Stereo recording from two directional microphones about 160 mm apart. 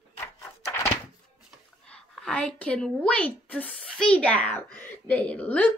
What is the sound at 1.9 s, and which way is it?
A woman's voice, 5° left (ahead or behind).